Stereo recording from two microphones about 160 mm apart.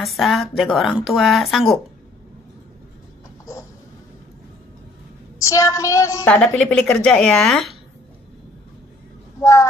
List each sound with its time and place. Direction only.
0.0 s speech: centre (ahead or behind)
5.4 s a woman's voice: 20° left (ahead or behind)
6.2 s speech: 10° left (ahead or behind)
9.4 s a woman's voice: 20° left (ahead or behind)